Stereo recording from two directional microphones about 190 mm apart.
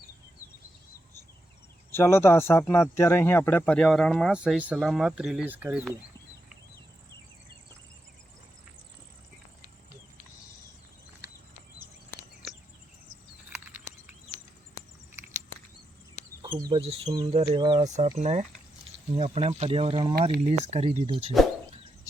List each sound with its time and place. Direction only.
1.9 s speech: 15° left (ahead or behind); by 6.0 s 5° right (ahead or behind)
13.5 s a sound: 10° right (ahead or behind)
16.6 s speech: 20° right (ahead or behind)
17.8 s speech: 40° right (ahead or behind)